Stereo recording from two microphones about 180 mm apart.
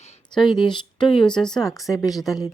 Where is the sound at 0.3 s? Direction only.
25° left (ahead or behind).